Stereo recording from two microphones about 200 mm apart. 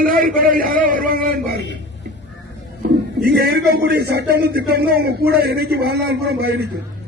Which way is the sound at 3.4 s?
50° right (ahead or behind).